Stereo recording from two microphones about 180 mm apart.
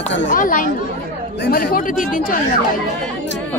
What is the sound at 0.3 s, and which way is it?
Speech, 50° left (ahead or behind).